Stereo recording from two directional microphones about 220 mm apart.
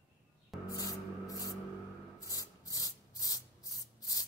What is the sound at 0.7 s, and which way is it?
Spray, 15° left (ahead or behind).